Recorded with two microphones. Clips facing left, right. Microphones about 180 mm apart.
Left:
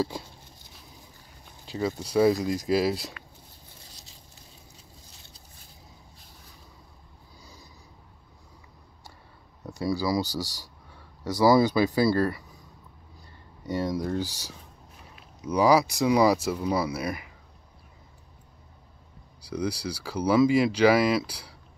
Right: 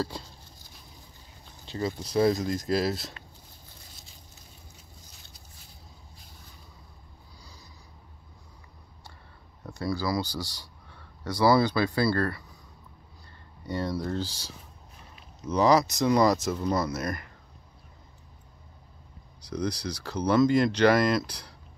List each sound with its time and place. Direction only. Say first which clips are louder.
0.0 s speech: left 3 dB; 10° left (ahead or behind)
1.7 s speech: left 2 dB; 10° left (ahead or behind)
9.6 s speech: left 3 dB; 15° left (ahead or behind)
10.2 s speech: left 3 dB; 40° left (ahead or behind)
10.9 s speech: left 3 dB; 10° left (ahead or behind)
13.7 s speech: left 2 dB; 15° left (ahead or behind)
19.5 s speech: left 1 dB; 5° left (ahead or behind)